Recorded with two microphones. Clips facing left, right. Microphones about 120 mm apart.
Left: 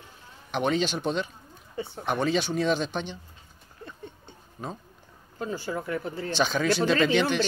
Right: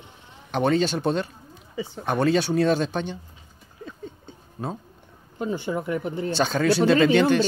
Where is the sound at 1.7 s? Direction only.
90° right.